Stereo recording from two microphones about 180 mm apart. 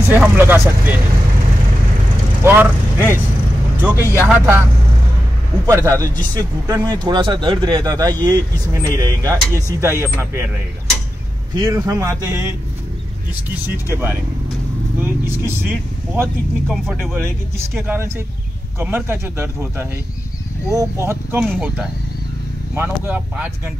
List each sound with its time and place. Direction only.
0.1 s speech: 10° right (ahead or behind)
2.4 s speech: 10° right (ahead or behind)
5.7 s speech: 15° right (ahead or behind)
11.5 s speech: 20° right (ahead or behind)
15.0 s speech: 15° right (ahead or behind)
16.6 s speech: centre (ahead or behind)
17.7 s speech: 10° right (ahead or behind)